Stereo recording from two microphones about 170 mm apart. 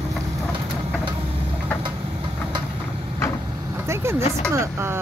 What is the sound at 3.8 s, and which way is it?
Vehicle, 15° right (ahead or behind).